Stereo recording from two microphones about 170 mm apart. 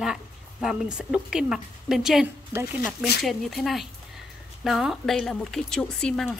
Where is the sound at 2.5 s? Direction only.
75° left (ahead or behind).